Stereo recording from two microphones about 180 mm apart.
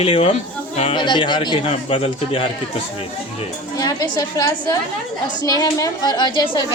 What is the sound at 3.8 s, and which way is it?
A woman's voice, 20° left (ahead or behind).